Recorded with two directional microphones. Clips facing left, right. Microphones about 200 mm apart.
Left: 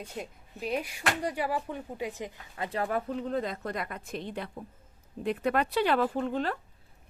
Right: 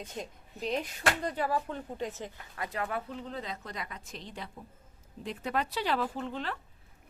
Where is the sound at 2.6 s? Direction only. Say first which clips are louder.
Left 4 dB; 30° left (ahead or behind).